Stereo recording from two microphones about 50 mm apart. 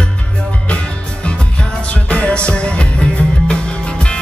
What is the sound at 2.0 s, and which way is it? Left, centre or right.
Music, left.